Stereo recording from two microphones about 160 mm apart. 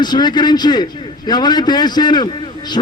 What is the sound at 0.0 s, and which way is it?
A man's voice, 25° left (ahead or behind).